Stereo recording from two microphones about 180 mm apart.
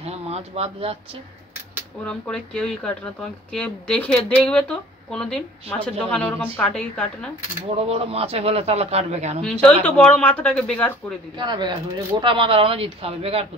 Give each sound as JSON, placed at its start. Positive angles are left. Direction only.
{"t": 0.0, "sound": "a sound", "side_deg": -35}
{"t": 2.0, "sound": "speech", "side_deg": 5}
{"t": 7.8, "sound": "a man's voice", "side_deg": -35}
{"t": 9.4, "sound": "speech", "side_deg": 5}
{"t": 11.3, "sound": "a man's voice", "side_deg": -25}